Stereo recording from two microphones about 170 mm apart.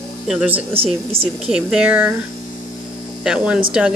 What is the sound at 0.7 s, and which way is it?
Speech, 35° right (ahead or behind).